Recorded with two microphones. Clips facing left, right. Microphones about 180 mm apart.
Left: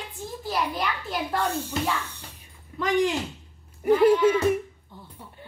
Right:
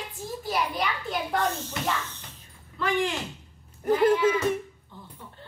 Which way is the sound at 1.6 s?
10° left (ahead or behind).